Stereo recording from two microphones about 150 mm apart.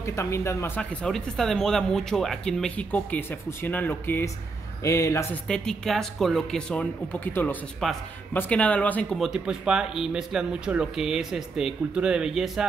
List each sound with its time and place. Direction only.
0.0 s speech: 20° left (ahead or behind)
5.5 s speech: 5° left (ahead or behind)
7.8 s speech: centre (ahead or behind)
9.2 s speech: 5° right (ahead or behind)